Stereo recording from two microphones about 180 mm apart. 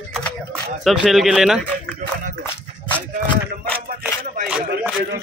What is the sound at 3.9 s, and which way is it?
Music, 50° right (ahead or behind).